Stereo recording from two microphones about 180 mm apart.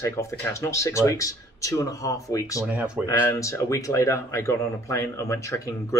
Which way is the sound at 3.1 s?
15° left (ahead or behind).